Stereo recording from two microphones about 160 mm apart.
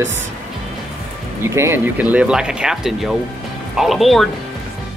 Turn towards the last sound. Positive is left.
turn(degrees=0)  # may be behind; listen again after turning